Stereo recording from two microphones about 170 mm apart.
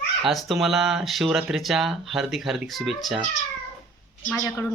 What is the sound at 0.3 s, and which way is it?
Speech, centre (ahead or behind).